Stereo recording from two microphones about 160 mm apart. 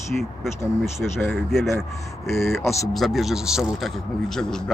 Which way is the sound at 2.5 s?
15° left (ahead or behind).